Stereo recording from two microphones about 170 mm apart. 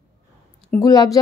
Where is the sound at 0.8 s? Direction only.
20° left (ahead or behind).